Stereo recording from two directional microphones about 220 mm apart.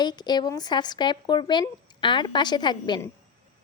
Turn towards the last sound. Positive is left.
turn(degrees=20)  # may be behind; listen again after turning